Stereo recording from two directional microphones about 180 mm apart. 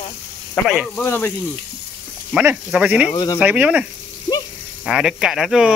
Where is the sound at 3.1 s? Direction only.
25° left (ahead or behind).